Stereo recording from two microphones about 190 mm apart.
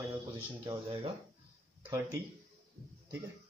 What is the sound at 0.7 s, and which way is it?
Speech, 30° right (ahead or behind).